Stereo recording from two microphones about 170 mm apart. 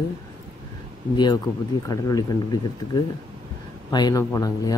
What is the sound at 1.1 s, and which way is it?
A man's voice, 25° left (ahead or behind).